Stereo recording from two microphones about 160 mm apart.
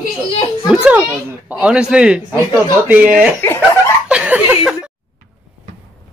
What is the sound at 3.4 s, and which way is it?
Speech, 15° left (ahead or behind).